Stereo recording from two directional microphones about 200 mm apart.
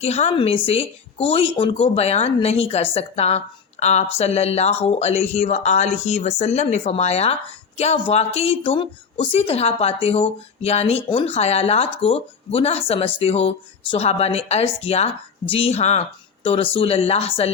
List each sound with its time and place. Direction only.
0.0 s a woman's voice: 30° left (ahead or behind)